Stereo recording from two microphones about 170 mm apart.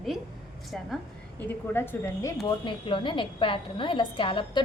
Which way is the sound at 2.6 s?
30° left (ahead or behind).